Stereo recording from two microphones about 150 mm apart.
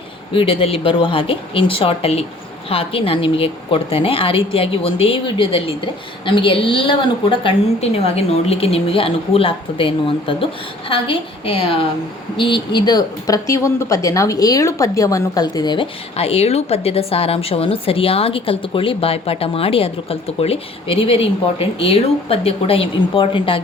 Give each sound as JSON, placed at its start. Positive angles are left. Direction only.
{"t": 0.3, "sound": "a woman's voice", "side_deg": 35}
{"t": 16.1, "sound": "a woman's voice", "side_deg": 40}